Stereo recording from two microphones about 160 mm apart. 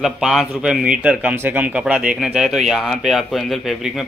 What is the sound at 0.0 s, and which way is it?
Speech, centre (ahead or behind).